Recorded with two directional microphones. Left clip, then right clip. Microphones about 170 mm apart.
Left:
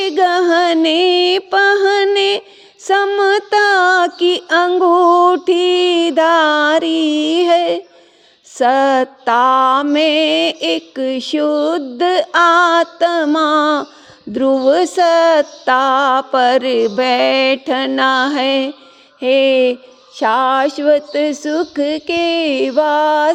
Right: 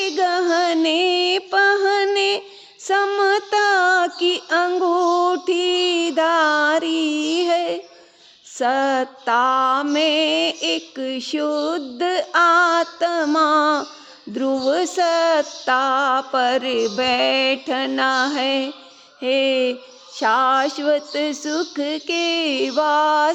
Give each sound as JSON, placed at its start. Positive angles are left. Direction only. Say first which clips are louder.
{"t": 0.0, "sound": "music", "louder": "left 6 dB", "side_deg": 35}
{"t": 2.8, "sound": "a sound", "louder": "left 5 dB", "side_deg": 35}
{"t": 8.5, "sound": "music", "louder": "left 7 dB", "side_deg": 35}
{"t": 19.2, "sound": "speech", "louder": "left 7 dB", "side_deg": 30}